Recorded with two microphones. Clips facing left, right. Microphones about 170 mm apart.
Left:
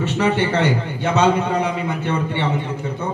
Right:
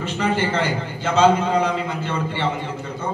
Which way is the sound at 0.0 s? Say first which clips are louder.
Left 3 dB; 70° left (ahead or behind).